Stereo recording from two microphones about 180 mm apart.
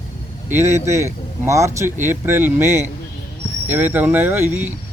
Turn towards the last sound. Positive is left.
turn(degrees=-10)  # may be behind; listen again after turning